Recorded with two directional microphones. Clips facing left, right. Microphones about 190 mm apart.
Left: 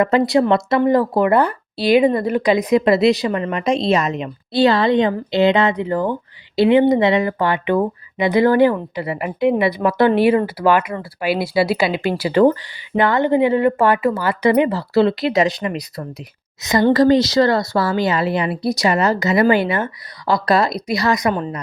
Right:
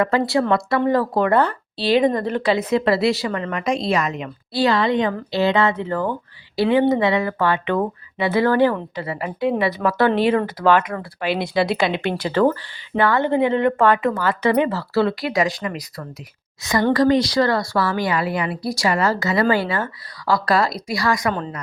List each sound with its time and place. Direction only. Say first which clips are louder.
0.0 s speech: left 4 dB; 20° left (ahead or behind)